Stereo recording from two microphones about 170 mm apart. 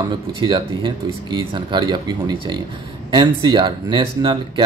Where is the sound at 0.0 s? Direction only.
30° right (ahead or behind).